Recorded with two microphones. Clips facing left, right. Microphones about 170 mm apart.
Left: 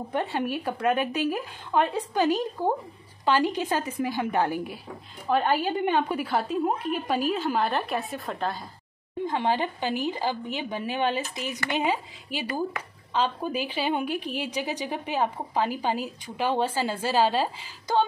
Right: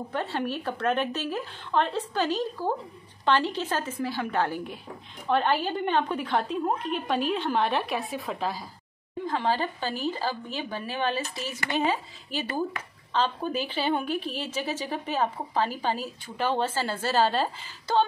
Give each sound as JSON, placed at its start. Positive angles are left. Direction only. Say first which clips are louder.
{"t": 0.1, "sound": "a woman's voice", "louder": "left 3 dB", "side_deg": 15}
{"t": 9.2, "sound": "a woman's voice", "louder": "left 1 dB", "side_deg": 20}